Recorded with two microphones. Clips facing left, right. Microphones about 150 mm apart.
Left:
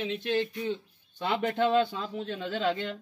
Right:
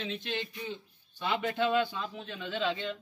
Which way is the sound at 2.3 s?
40° left (ahead or behind).